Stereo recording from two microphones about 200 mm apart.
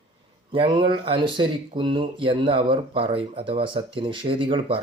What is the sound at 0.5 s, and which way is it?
Speech, 25° right (ahead or behind).